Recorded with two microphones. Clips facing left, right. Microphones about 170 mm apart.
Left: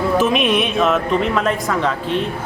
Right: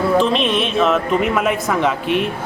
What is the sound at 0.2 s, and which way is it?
Speech, 5° left (ahead or behind).